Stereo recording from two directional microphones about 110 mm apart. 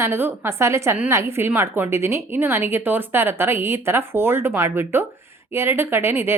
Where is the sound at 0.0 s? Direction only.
20° right (ahead or behind).